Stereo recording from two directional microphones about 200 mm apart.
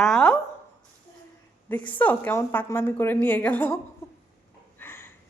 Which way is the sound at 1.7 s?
10° left (ahead or behind).